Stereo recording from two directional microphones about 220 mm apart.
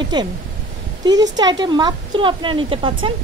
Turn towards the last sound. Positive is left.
turn(degrees=-20)  # may be behind; listen again after turning